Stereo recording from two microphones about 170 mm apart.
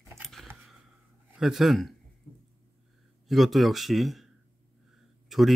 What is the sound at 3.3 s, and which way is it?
Speech, centre (ahead or behind).